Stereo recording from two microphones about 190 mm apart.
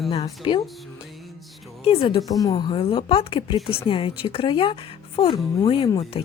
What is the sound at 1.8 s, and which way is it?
Speech, 25° left (ahead or behind).